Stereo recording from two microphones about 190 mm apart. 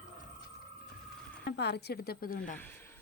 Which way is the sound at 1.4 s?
60° left (ahead or behind).